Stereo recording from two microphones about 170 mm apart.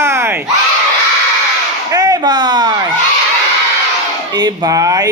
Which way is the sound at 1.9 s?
20° right (ahead or behind).